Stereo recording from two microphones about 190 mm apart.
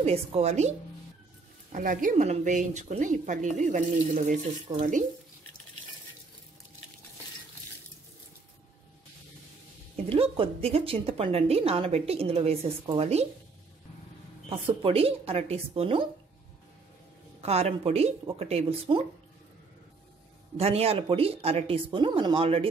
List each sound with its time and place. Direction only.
0.0 s speech: 30° right (ahead or behind)
10.0 s speech: 30° right (ahead or behind)
14.5 s speech: 30° right (ahead or behind)
17.4 s speech: 30° right (ahead or behind)
20.5 s speech: 30° right (ahead or behind)